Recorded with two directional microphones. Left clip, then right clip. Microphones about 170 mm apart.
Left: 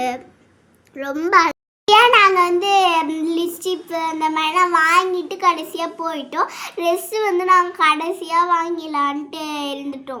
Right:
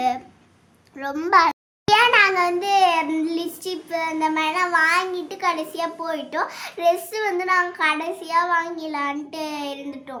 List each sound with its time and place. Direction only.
0.9 s a child's voice: 5° left (ahead or behind)